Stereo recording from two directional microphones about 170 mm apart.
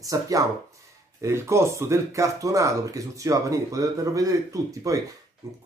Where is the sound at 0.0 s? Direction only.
20° right (ahead or behind).